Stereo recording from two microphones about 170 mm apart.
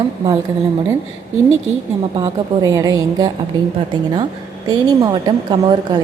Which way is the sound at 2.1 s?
20° right (ahead or behind).